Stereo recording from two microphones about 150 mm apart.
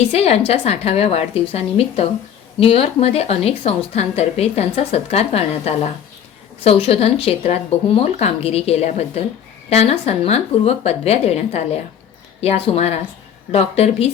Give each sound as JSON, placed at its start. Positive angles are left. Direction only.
{"t": 0.1, "sound": "a woman's voice", "side_deg": 40}